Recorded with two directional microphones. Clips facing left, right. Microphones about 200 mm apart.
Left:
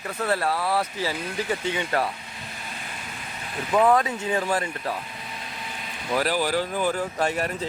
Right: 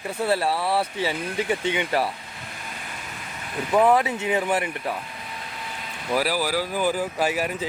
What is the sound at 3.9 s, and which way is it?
Speech, 20° right (ahead or behind).